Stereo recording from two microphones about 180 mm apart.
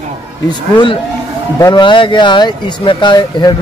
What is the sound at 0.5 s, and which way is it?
Speech, 25° left (ahead or behind).